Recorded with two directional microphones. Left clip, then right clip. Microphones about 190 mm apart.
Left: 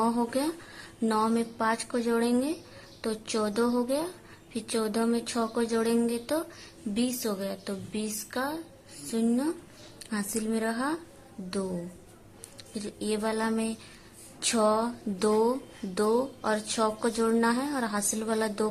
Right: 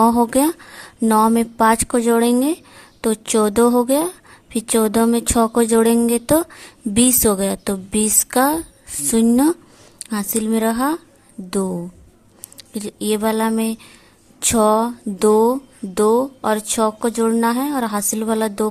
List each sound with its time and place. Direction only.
0.0 s a woman's voice: 40° right (ahead or behind)
12.5 s a woman's voice: 35° right (ahead or behind)